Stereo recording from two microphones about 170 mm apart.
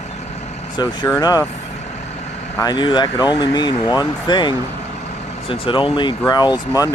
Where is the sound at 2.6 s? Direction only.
25° left (ahead or behind).